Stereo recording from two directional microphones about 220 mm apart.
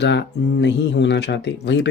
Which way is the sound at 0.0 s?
50° left (ahead or behind).